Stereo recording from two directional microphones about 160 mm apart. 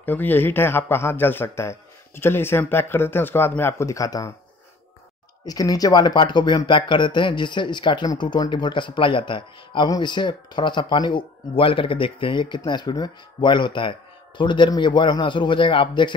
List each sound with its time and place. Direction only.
0.0 s a man's voice: 10° left (ahead or behind)
5.4 s speech: 25° left (ahead or behind)